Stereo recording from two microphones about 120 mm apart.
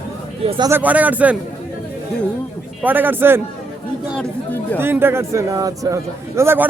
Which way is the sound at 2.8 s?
15° right (ahead or behind).